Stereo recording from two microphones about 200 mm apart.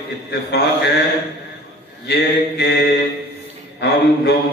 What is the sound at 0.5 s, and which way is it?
Speech, 55° left (ahead or behind).